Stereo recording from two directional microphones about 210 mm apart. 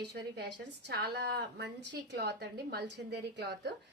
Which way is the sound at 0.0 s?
55° right (ahead or behind).